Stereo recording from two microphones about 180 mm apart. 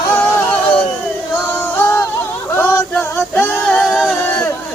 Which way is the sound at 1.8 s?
15° left (ahead or behind).